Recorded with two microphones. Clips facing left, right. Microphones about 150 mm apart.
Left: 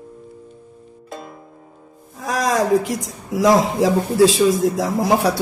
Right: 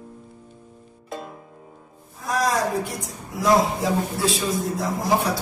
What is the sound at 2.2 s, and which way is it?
Speech, 90° left.